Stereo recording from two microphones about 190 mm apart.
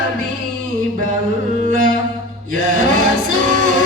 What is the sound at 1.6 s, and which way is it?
Music, 45° right (ahead or behind).